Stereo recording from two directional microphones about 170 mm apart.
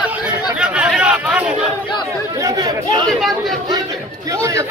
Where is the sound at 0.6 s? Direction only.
5° right (ahead or behind).